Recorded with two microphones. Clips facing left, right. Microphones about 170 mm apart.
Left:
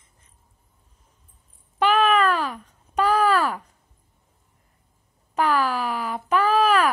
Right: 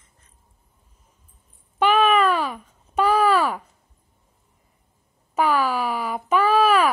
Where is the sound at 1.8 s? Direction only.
10° right (ahead or behind).